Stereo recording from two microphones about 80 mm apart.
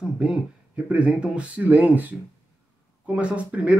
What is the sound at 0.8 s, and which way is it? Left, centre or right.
Speech, centre.